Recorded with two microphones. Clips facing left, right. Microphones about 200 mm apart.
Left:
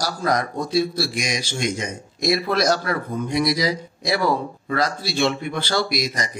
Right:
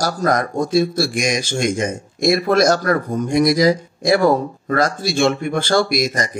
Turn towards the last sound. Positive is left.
turn(degrees=-50)  # may be behind; listen again after turning